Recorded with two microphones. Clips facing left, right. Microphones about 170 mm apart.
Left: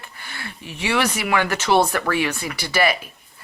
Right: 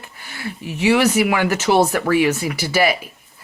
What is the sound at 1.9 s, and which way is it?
Speech, 30° right (ahead or behind).